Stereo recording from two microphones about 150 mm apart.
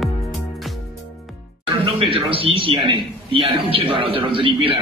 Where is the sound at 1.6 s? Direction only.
35° right (ahead or behind).